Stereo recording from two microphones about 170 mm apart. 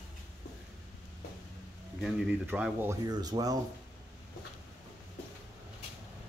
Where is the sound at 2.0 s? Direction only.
5° right (ahead or behind).